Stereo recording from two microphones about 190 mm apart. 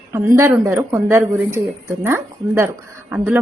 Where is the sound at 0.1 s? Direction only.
10° right (ahead or behind).